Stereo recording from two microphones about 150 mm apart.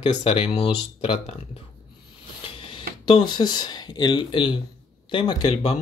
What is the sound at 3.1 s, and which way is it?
Speech, 30° left (ahead or behind).